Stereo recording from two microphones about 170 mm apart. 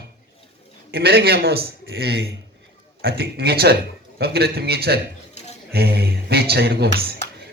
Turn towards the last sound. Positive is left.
turn(degrees=-70)  # may be behind; listen again after turning